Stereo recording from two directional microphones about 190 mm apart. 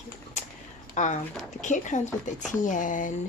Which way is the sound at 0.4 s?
40° left (ahead or behind).